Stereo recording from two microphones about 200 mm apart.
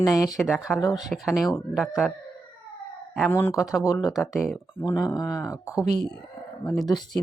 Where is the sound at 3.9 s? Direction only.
20° left (ahead or behind).